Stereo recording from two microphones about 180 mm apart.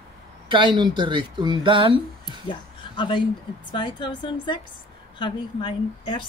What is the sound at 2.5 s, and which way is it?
A woman's voice, 25° left (ahead or behind).